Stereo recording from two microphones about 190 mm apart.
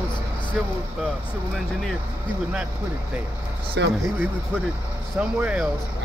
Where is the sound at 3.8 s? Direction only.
65° right (ahead or behind).